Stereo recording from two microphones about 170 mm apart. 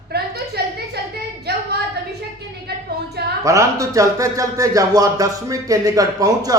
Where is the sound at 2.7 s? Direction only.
65° right (ahead or behind).